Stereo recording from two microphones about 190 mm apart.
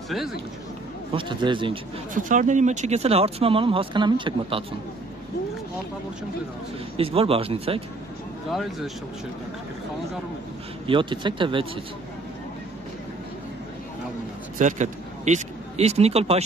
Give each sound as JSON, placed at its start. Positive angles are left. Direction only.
{"t": 1.1, "sound": "speech", "side_deg": -25}
{"t": 2.1, "sound": "speech", "side_deg": -40}
{"t": 7.0, "sound": "speech", "side_deg": -30}
{"t": 8.5, "sound": "speech", "side_deg": 0}
{"t": 10.9, "sound": "speech", "side_deg": -25}
{"t": 14.6, "sound": "a man's voice", "side_deg": -40}